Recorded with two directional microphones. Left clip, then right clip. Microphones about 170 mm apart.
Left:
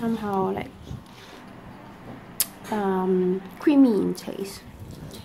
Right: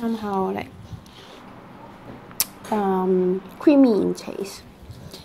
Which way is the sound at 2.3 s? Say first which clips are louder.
Right 4 dB; 15° right (ahead or behind).